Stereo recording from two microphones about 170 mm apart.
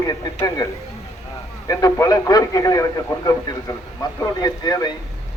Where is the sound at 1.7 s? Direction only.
20° left (ahead or behind).